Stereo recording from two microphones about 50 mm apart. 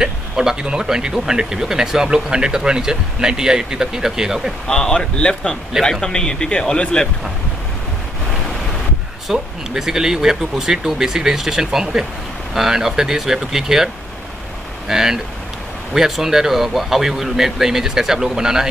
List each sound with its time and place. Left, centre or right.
0.0 s speech: centre
4.6 s speech: centre
9.3 s speech: centre
14.9 s speech: centre